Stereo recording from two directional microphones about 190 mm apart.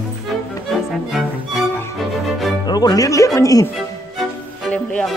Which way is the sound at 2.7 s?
20° left (ahead or behind).